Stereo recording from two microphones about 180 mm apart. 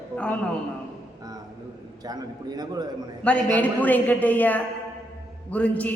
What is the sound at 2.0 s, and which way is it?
Speech, 20° right (ahead or behind).